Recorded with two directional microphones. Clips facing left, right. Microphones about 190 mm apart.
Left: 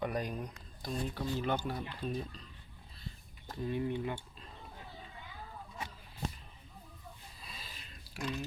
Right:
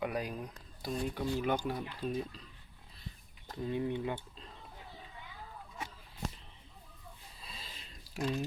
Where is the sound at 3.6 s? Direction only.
20° right (ahead or behind).